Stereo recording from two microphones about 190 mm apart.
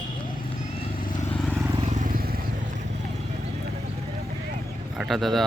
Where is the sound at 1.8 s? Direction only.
40° right (ahead or behind).